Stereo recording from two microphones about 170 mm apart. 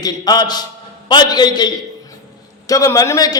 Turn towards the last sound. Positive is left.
turn(degrees=20)  # may be behind; listen again after turning